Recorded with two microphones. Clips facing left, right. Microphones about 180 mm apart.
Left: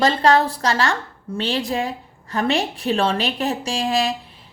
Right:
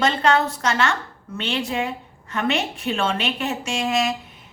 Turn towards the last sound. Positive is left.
turn(degrees=30)  # may be behind; listen again after turning